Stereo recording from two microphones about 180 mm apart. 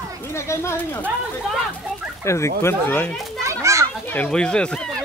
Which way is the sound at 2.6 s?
15° left (ahead or behind).